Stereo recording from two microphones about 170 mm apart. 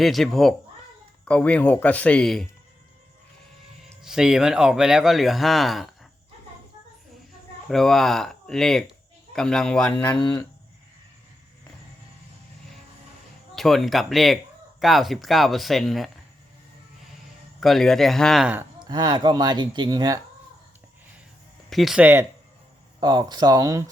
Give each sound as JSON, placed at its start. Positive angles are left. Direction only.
{"t": 0.0, "sound": "a man's voice", "side_deg": 0}
{"t": 4.0, "sound": "speech", "side_deg": -5}
{"t": 7.7, "sound": "speech", "side_deg": 0}
{"t": 10.1, "sound": "speech", "side_deg": 25}
{"t": 13.6, "sound": "speech", "side_deg": 0}
{"t": 17.6, "sound": "speech", "side_deg": 0}
{"t": 18.8, "sound": "speech", "side_deg": -25}
{"t": 21.7, "sound": "speech", "side_deg": 0}
{"t": 23.0, "sound": "speech", "side_deg": -25}